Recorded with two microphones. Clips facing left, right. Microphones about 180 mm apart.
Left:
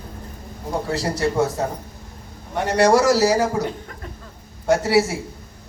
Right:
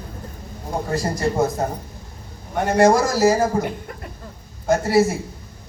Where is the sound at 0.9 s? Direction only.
75° left (ahead or behind).